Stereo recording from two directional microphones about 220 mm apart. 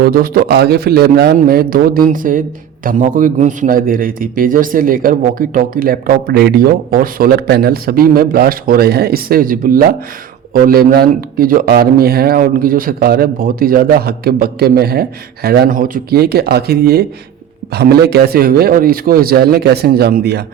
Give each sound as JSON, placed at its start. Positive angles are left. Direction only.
{"t": 0.0, "sound": "a man's voice", "side_deg": -40}